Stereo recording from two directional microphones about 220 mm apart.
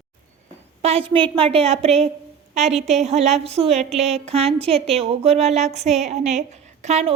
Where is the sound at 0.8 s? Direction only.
25° right (ahead or behind).